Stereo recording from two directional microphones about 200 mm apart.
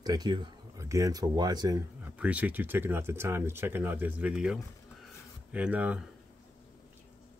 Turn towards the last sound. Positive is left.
turn(degrees=-5)  # may be behind; listen again after turning